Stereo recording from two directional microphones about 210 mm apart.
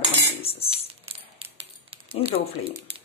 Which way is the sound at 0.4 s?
30° left (ahead or behind).